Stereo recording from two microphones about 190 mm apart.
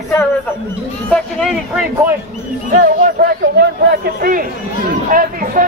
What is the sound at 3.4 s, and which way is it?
Speech, 65° right (ahead or behind).